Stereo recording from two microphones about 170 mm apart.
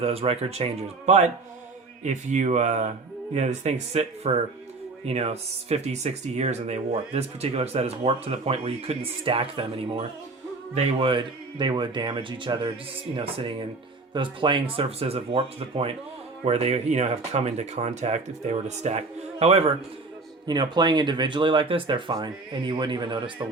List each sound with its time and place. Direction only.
0.0 s speech: 35° right (ahead or behind)
20.5 s speech: 25° right (ahead or behind)